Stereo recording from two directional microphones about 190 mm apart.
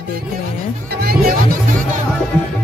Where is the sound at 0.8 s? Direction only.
50° right (ahead or behind).